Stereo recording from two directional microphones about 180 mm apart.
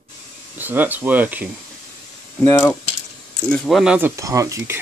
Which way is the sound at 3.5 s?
Centre (ahead or behind).